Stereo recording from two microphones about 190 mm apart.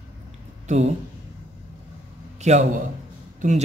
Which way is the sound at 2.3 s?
35° right (ahead or behind).